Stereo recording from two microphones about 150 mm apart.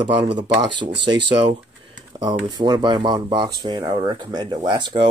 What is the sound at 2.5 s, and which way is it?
Speech, 30° right (ahead or behind).